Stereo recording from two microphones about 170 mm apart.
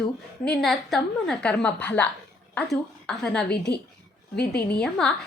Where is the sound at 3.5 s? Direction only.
75° left (ahead or behind).